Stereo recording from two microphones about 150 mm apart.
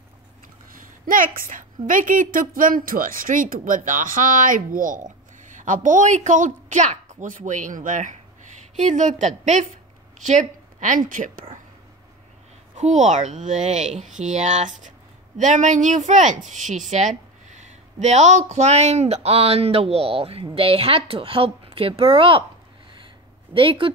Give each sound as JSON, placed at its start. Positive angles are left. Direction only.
{"t": 0.7, "sound": "a woman's voice", "side_deg": -65}
{"t": 12.7, "sound": "a woman's voice", "side_deg": -50}
{"t": 23.5, "sound": "a woman's voice", "side_deg": -35}